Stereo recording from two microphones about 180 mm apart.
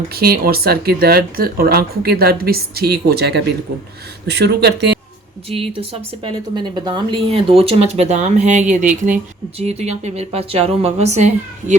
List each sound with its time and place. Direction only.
0.1 s speech: 55° right (ahead or behind)
6.2 s speech: 25° right (ahead or behind)